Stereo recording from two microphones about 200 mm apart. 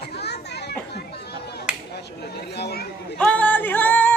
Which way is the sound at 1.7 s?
5° right (ahead or behind).